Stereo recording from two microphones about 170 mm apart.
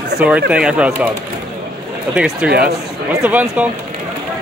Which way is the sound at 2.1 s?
5° right (ahead or behind).